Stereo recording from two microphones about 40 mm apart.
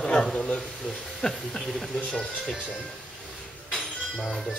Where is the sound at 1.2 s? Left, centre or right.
Centre.